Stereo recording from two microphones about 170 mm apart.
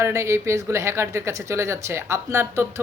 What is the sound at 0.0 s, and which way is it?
Speech, 15° right (ahead or behind).